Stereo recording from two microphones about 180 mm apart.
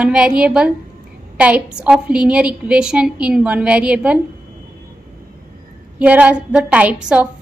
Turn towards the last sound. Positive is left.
turn(degrees=-5)  # may be behind; listen again after turning